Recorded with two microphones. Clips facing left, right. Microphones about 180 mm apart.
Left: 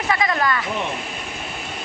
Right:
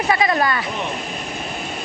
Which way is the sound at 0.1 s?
30° right (ahead or behind).